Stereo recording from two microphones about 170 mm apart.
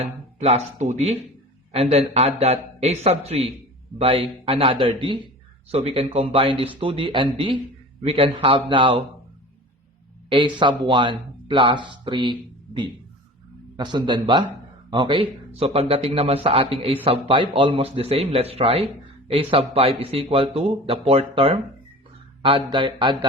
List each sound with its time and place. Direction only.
0.0 s speech: 40° right (ahead or behind)
10.2 s speech: 30° right (ahead or behind)